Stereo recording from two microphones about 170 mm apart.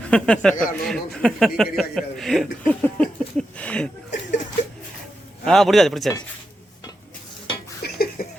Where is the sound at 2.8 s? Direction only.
5° left (ahead or behind).